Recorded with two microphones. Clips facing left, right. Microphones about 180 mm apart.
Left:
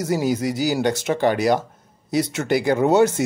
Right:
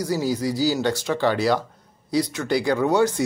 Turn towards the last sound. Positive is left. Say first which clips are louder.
# left 3 dB
turn(degrees=25)  # may be behind; listen again after turning